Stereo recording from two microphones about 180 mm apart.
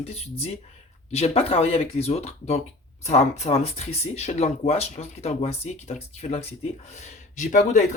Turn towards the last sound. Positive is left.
turn(degrees=45)  # may be behind; listen again after turning